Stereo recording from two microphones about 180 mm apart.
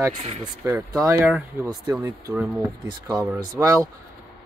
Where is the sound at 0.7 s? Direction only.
15° right (ahead or behind).